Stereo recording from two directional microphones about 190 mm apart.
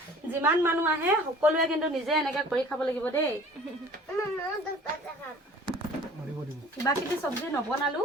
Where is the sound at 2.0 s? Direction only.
Centre (ahead or behind).